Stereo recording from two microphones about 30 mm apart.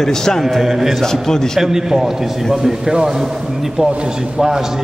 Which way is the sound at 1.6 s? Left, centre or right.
Centre.